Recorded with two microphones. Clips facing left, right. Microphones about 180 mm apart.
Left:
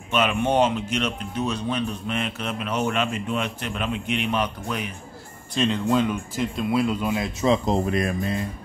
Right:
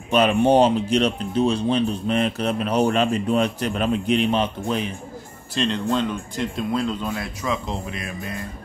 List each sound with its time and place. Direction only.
0.1 s speech: 35° right (ahead or behind)
5.5 s speech: centre (ahead or behind)
7.4 s speech: 35° left (ahead or behind)